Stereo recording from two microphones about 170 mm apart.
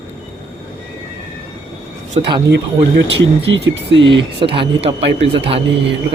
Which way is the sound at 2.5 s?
85° right.